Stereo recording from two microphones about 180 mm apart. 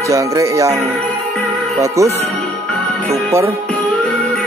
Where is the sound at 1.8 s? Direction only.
15° right (ahead or behind).